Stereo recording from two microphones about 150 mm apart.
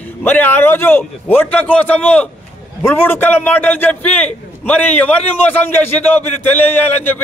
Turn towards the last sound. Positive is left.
turn(degrees=10)  # may be behind; listen again after turning